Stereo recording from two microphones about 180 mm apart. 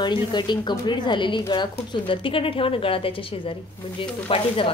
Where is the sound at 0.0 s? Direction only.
25° left (ahead or behind).